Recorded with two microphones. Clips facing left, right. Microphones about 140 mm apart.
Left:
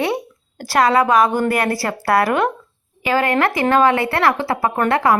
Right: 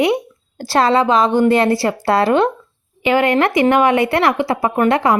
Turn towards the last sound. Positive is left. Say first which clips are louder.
# right 2 dB
turn(degrees=-20)  # may be behind; listen again after turning